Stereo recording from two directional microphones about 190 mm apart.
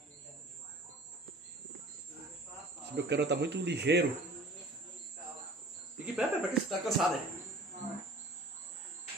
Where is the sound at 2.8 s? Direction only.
60° right (ahead or behind).